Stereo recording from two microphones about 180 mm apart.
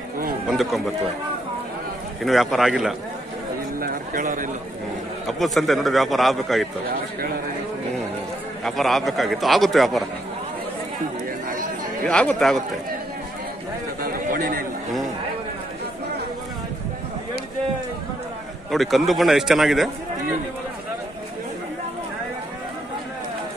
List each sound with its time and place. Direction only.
0.5 s speech: centre (ahead or behind)
2.2 s a man's voice: centre (ahead or behind)
3.8 s a sound: 50° right (ahead or behind)
5.2 s a man's voice: centre (ahead or behind)
8.6 s a man's voice: centre (ahead or behind)
12.1 s a man's voice: 5° left (ahead or behind)
14.0 s chatter: 50° right (ahead or behind)
18.7 s a man's voice: centre (ahead or behind)